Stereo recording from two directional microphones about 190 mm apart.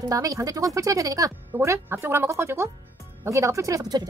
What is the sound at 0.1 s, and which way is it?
Speech, 20° right (ahead or behind).